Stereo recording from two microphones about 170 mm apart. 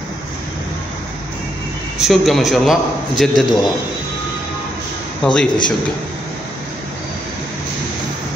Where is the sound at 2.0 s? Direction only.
Centre (ahead or behind).